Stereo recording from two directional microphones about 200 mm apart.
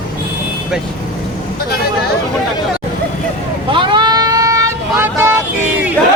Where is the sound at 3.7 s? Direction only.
25° right (ahead or behind).